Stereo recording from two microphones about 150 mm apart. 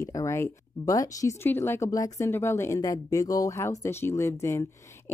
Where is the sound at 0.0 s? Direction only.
20° left (ahead or behind).